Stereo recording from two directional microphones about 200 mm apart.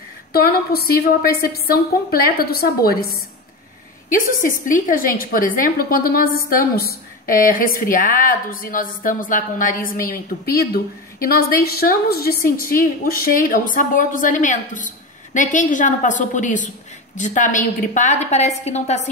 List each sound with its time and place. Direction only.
0.3 s a woman's voice: 50° left (ahead or behind)
4.4 s a woman's voice: 40° left (ahead or behind)